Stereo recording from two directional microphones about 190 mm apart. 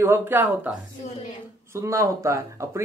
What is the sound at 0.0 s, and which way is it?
Speech, 10° right (ahead or behind).